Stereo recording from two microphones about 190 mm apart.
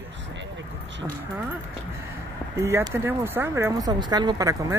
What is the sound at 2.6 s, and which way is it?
Speech, 15° right (ahead or behind).